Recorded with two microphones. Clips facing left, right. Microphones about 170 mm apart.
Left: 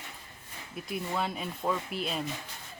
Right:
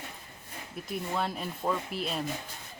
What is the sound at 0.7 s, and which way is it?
Speech, centre (ahead or behind).